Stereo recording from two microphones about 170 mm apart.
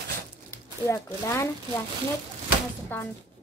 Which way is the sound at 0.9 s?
15° left (ahead or behind).